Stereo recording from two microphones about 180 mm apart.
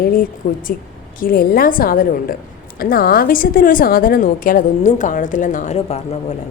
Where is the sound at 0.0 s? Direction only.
50° left (ahead or behind).